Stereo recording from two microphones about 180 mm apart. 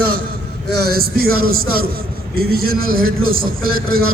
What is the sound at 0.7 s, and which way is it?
A man's voice, 60° right (ahead or behind).